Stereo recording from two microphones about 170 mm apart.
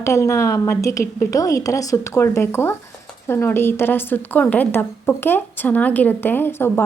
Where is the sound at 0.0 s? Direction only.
15° left (ahead or behind).